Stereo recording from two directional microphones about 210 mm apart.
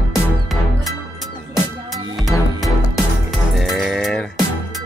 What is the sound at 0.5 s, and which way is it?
Music, centre (ahead or behind).